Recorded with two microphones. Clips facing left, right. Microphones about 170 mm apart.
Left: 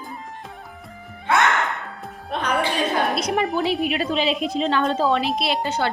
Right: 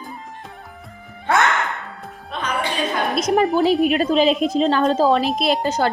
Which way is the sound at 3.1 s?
45° right (ahead or behind).